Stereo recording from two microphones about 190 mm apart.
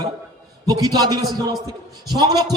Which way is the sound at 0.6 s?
20° right (ahead or behind).